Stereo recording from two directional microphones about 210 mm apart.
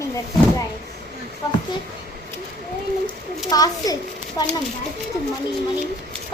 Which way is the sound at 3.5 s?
15° left (ahead or behind).